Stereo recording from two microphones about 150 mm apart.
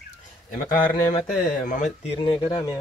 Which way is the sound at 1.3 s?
65° left (ahead or behind).